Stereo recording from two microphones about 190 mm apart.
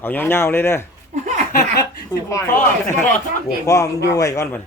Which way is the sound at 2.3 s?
15° left (ahead or behind).